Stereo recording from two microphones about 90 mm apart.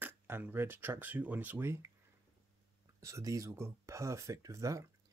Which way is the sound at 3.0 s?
35° right (ahead or behind).